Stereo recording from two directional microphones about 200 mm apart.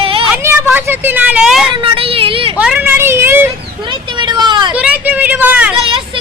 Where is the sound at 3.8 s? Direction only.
25° right (ahead or behind).